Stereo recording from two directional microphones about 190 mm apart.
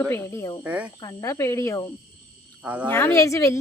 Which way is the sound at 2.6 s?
10° right (ahead or behind).